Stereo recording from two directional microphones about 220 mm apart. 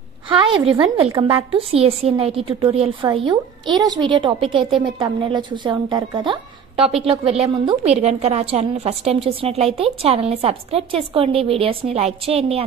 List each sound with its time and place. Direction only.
0.7 s a woman's voice: 25° right (ahead or behind)